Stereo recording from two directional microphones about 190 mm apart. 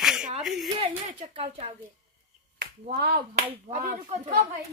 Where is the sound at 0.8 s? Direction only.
30° right (ahead or behind).